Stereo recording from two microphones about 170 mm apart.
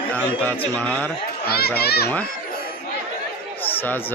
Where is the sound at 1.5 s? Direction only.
65° left (ahead or behind).